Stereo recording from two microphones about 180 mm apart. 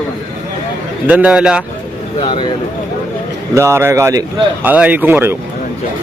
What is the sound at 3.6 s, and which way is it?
Speech, 15° right (ahead or behind).